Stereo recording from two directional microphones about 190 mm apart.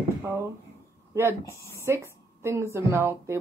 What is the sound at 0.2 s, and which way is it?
Speech, 15° right (ahead or behind).